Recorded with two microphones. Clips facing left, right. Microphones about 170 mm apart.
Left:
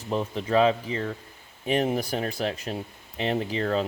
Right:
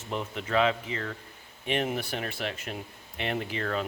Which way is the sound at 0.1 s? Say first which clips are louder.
Left 5 dB; 35° left (ahead or behind).